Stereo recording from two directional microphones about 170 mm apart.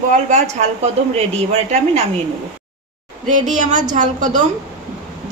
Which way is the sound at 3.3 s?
50° right (ahead or behind).